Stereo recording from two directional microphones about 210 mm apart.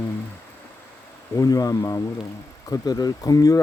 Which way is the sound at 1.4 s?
15° left (ahead or behind).